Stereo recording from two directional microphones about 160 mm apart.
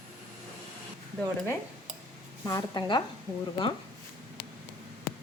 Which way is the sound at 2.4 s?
25° left (ahead or behind).